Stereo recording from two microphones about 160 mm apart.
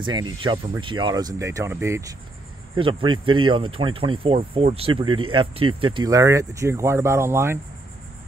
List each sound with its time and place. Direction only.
0.0 s speech: 30° right (ahead or behind)
2.7 s speech: 30° right (ahead or behind); by 7.5 s 15° right (ahead or behind)